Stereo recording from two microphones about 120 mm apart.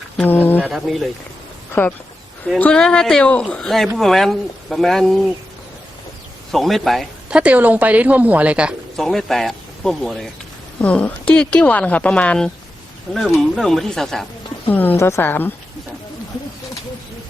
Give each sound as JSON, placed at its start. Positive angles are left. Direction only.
{"t": 0.2, "sound": "a woman's voice", "side_deg": 15}
{"t": 0.7, "sound": "speech", "side_deg": 0}
{"t": 1.8, "sound": "a woman's voice", "side_deg": 15}
{"t": 6.5, "sound": "speech", "side_deg": 0}
{"t": 9.0, "sound": "a woman's voice", "side_deg": 0}
{"t": 14.7, "sound": "a woman's voice", "side_deg": 15}